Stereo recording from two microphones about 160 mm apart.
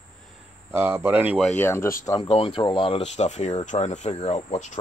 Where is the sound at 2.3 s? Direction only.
35° left (ahead or behind).